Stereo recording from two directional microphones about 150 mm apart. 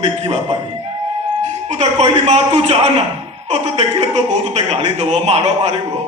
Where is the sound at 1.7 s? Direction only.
50° right (ahead or behind).